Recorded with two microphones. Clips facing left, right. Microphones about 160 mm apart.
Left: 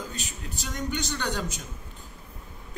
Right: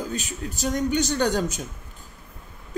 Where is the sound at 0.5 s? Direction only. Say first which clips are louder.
Right 9 dB; 45° right (ahead or behind).